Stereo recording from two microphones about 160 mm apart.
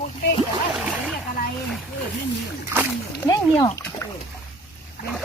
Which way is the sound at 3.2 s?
20° left (ahead or behind).